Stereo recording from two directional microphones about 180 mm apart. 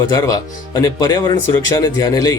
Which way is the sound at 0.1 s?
20° left (ahead or behind).